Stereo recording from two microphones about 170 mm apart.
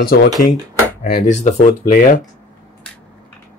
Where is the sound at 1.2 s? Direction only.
45° left (ahead or behind).